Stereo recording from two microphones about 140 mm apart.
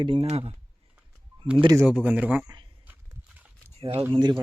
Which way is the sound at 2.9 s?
15° right (ahead or behind).